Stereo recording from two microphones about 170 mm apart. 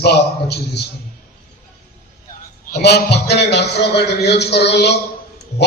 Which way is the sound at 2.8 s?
75° left (ahead or behind).